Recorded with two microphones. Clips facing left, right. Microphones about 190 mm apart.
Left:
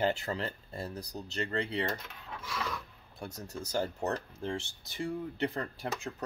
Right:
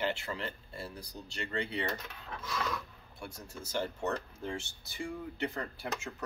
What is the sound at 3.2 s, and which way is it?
Speech, 40° left (ahead or behind).